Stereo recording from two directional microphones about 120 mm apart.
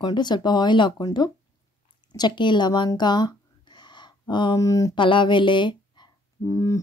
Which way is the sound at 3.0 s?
35° left (ahead or behind).